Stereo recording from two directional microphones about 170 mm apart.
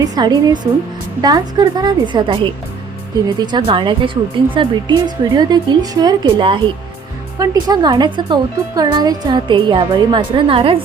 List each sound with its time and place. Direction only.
0.0 s speech: 25° right (ahead or behind)